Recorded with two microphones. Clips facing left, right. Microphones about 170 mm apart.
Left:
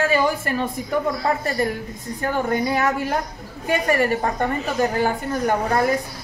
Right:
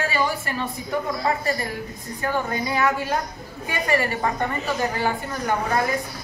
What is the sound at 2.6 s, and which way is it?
Speech, 45° left (ahead or behind).